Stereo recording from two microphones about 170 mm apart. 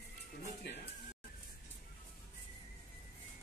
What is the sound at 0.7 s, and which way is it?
Music, 80° left.